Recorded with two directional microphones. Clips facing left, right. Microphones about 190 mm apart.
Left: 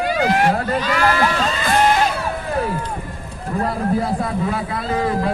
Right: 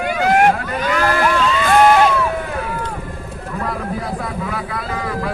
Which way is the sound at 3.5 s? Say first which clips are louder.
Left 5 dB; 30° left (ahead or behind).